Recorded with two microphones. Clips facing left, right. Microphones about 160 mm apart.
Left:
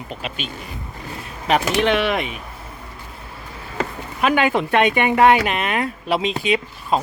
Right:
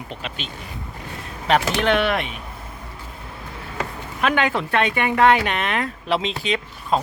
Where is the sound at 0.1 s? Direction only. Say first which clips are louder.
Left 5 dB; 5° left (ahead or behind).